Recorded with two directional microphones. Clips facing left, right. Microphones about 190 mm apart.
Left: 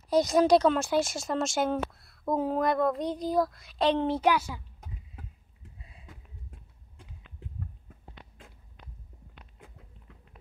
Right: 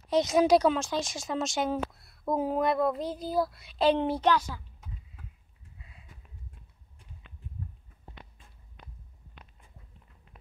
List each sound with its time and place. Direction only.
0.3 s speech: 5° right (ahead or behind)
0.7 s a woman's voice: 5° left (ahead or behind)
4.2 s a child's voice: 10° left (ahead or behind)
5.8 s a sound: 25° left (ahead or behind)